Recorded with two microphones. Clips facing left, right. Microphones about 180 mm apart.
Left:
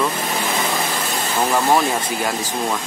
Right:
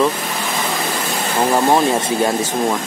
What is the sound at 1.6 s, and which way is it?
Speech, 20° right (ahead or behind).